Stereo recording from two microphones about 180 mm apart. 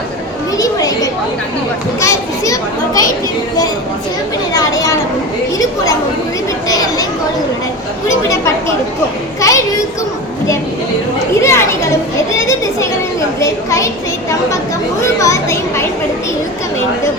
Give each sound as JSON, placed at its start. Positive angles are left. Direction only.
{"t": 0.5, "sound": "children playing", "side_deg": 20}
{"t": 4.5, "sound": "a sound", "side_deg": 20}
{"t": 6.7, "sound": "chatter", "side_deg": 20}
{"t": 9.4, "sound": "a sound", "side_deg": 20}
{"t": 11.3, "sound": "children playing", "side_deg": 15}
{"t": 13.4, "sound": "speech", "side_deg": 15}